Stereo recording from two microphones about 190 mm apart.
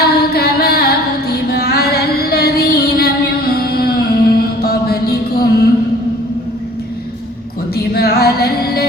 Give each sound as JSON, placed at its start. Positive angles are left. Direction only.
{"t": 0.0, "sound": "music", "side_deg": 55}
{"t": 7.8, "sound": "music", "side_deg": 55}